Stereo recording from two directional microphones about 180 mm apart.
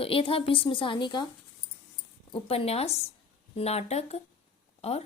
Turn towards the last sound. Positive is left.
turn(degrees=35)  # may be behind; listen again after turning